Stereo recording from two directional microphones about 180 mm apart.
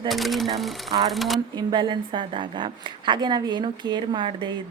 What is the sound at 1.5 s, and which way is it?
A woman's voice, 25° right (ahead or behind).